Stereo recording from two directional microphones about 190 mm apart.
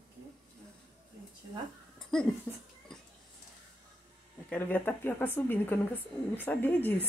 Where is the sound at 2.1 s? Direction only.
5° left (ahead or behind).